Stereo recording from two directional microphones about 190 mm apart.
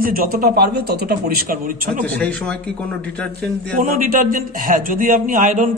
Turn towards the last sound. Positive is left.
turn(degrees=-45)  # may be behind; listen again after turning